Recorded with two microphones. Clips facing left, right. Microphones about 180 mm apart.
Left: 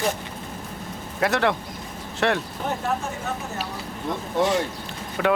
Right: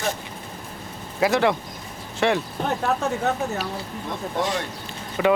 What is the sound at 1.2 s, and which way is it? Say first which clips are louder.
Speech: right 2 dB; centre (ahead or behind).